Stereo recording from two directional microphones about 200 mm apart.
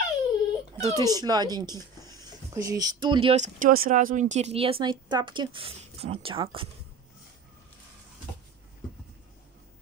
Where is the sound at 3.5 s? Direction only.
45° right (ahead or behind); by 6.6 s 25° right (ahead or behind).